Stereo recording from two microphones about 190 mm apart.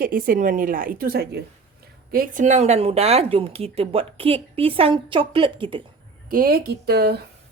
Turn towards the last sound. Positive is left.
turn(degrees=-55)  # may be behind; listen again after turning